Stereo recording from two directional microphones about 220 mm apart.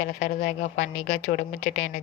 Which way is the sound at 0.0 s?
35° left (ahead or behind).